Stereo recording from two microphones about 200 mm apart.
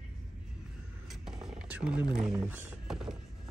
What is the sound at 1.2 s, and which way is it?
Music, 5° right (ahead or behind).